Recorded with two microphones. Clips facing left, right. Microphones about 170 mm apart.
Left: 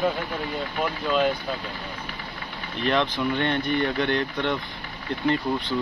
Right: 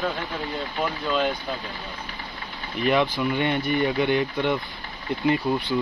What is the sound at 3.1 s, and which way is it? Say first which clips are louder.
Speech: right 1 dB; 10° right (ahead or behind).